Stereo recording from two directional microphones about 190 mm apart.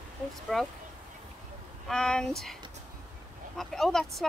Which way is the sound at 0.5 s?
Centre (ahead or behind).